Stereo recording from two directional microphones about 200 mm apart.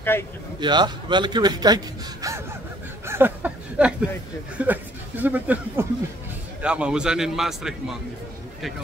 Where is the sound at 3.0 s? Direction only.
10° right (ahead or behind).